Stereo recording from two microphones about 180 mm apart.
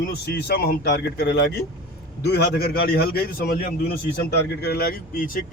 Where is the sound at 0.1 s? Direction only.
60° left (ahead or behind).